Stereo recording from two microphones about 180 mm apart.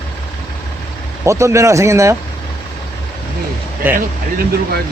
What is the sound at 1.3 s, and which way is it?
Speech, 15° right (ahead or behind).